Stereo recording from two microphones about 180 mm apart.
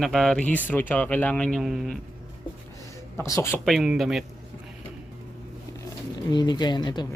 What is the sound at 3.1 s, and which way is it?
Speech, 15° left (ahead or behind).